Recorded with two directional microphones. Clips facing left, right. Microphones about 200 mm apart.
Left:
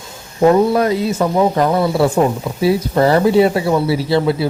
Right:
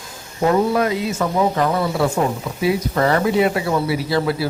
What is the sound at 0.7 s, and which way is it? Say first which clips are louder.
Speech: left 4 dB; 35° left (ahead or behind).